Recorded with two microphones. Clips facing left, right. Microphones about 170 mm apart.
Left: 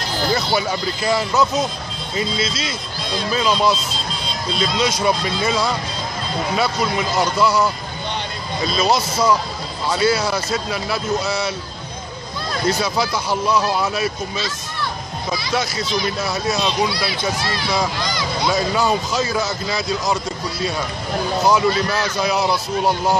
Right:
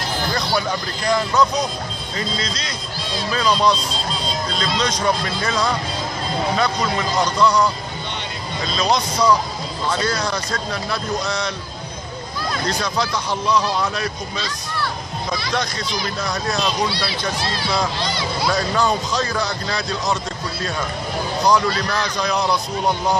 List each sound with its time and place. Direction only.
0.6 s speech: 5° left (ahead or behind)
12.6 s speech: 5° left (ahead or behind)
15.3 s speech: 5° left (ahead or behind)
17.9 s speech: 30° right (ahead or behind)
18.4 s speech: 5° left (ahead or behind)
21.4 s speech: 5° left (ahead or behind)